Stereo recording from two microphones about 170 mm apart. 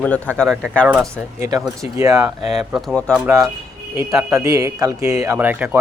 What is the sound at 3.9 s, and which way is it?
A man's voice, 10° right (ahead or behind).